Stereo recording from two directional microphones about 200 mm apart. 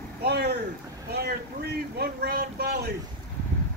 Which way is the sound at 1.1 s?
55° right (ahead or behind).